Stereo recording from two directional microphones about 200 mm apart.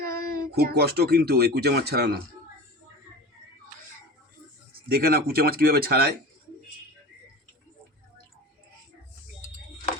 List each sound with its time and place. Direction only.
0.0 s speech: 50° right (ahead or behind)
4.9 s speech: 50° right (ahead or behind)